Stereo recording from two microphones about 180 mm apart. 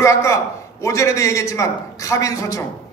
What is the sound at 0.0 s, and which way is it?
A man's voice, 15° left (ahead or behind).